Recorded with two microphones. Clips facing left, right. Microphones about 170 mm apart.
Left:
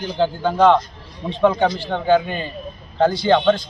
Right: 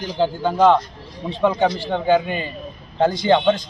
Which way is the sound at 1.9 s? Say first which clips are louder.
Left 1 dB; 10° right (ahead or behind).